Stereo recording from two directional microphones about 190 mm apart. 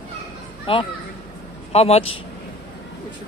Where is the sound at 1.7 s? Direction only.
35° left (ahead or behind).